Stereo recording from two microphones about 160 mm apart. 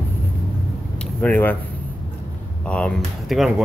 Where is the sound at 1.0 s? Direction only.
10° left (ahead or behind).